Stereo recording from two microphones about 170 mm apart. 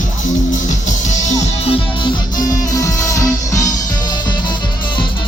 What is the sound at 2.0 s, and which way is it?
Music, 20° left (ahead or behind).